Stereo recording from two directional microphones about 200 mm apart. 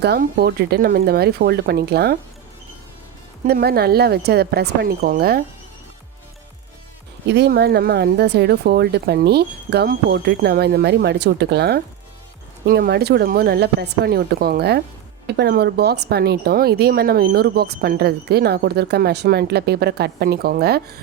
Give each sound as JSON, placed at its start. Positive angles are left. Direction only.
{"t": 0.0, "sound": "speech", "side_deg": -55}
{"t": 3.4, "sound": "speech", "side_deg": -50}
{"t": 7.3, "sound": "speech", "side_deg": -55}